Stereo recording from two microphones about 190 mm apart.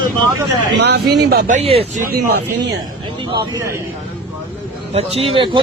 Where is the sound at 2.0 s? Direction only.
60° right (ahead or behind).